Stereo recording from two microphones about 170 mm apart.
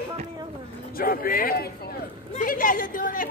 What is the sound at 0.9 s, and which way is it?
Speech, 60° left (ahead or behind).